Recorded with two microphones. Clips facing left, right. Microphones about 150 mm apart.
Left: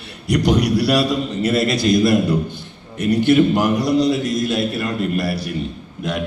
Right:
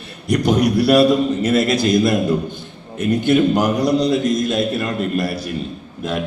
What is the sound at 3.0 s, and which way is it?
Speech, 50° right (ahead or behind).